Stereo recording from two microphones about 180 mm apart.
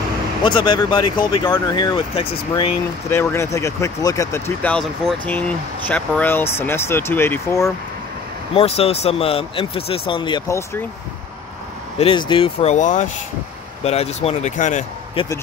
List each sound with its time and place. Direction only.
0.4 s speech: 25° left (ahead or behind)
3.1 s speech: 15° left (ahead or behind)
4.7 s speech: 5° left (ahead or behind)
8.5 s speech: 35° left (ahead or behind)
12.0 s speech: 30° left (ahead or behind)
15.2 s speech: 30° left (ahead or behind)